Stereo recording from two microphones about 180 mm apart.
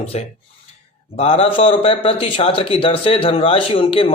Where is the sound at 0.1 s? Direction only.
35° left (ahead or behind).